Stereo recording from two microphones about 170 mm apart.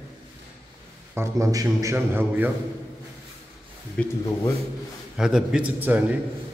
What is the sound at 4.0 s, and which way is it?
Speech, 5° left (ahead or behind).